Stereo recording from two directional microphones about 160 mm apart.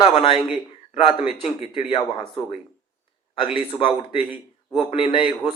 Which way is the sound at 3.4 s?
35° left (ahead or behind).